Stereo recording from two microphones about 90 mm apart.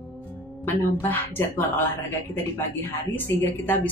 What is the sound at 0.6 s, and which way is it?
Speech, 25° left (ahead or behind).